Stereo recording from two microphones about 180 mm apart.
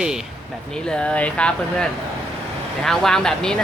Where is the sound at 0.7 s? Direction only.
5° left (ahead or behind).